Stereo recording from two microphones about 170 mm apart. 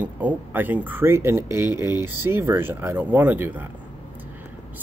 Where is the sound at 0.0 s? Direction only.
10° right (ahead or behind).